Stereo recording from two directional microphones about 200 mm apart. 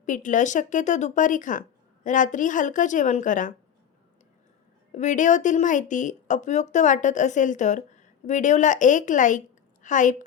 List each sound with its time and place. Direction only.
0.0 s a woman's voice: 40° left (ahead or behind)
4.9 s a woman's voice: 40° left (ahead or behind)